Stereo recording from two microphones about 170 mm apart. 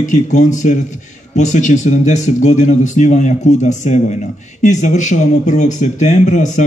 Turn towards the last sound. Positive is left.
turn(degrees=45)  # may be behind; listen again after turning